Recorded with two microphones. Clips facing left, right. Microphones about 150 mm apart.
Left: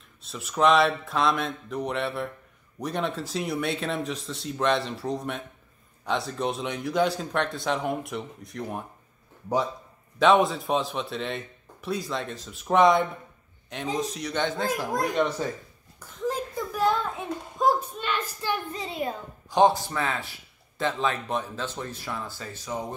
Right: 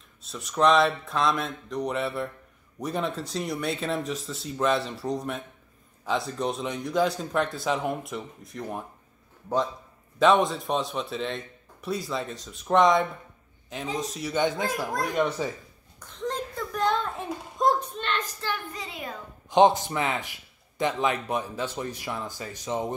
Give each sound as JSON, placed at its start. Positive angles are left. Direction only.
{"t": 0.2, "sound": "speech", "side_deg": 0}
{"t": 10.1, "sound": "speech", "side_deg": 0}
{"t": 14.7, "sound": "speech", "side_deg": 10}
{"t": 15.1, "sound": "speech", "side_deg": 0}
{"t": 16.0, "sound": "a sound", "side_deg": 5}
{"t": 18.7, "sound": "a sound", "side_deg": 30}
{"t": 19.5, "sound": "a man's voice", "side_deg": -20}